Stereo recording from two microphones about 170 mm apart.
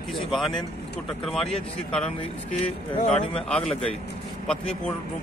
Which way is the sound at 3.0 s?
40° left (ahead or behind).